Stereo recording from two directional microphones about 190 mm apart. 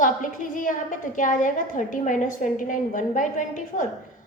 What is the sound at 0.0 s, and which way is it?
A woman's voice, 45° left (ahead or behind).